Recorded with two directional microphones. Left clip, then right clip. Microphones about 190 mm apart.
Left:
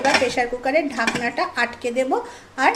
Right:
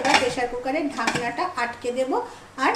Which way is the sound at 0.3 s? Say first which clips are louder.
Left 5 dB; 45° left (ahead or behind).